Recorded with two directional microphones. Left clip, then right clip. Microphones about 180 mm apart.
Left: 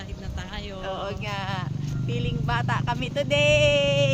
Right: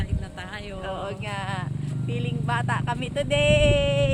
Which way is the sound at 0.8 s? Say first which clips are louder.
Left 1 dB; 5° left (ahead or behind).